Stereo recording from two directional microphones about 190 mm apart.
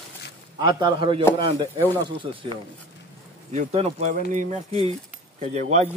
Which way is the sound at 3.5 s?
35° right (ahead or behind).